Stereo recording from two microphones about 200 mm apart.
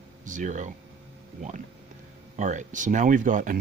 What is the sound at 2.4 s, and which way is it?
Speech, 35° right (ahead or behind).